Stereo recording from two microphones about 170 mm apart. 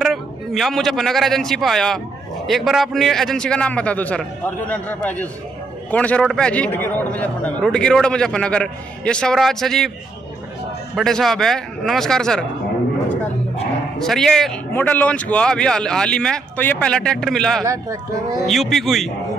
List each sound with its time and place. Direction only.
0.0 s a man's voice: centre (ahead or behind)
11.0 s a man's voice: centre (ahead or behind)
13.9 s a man's voice: centre (ahead or behind)
17.6 s speech: 20° right (ahead or behind)
18.4 s a man's voice: centre (ahead or behind)